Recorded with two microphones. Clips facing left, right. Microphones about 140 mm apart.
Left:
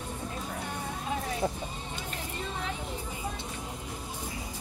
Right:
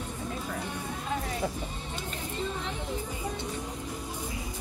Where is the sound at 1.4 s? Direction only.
40° left (ahead or behind).